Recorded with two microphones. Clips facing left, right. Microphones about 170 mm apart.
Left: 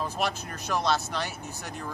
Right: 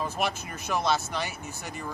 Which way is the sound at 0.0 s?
5° right (ahead or behind).